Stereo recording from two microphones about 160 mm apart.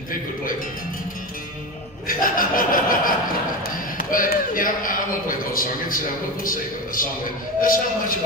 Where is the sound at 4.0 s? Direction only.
60° left (ahead or behind).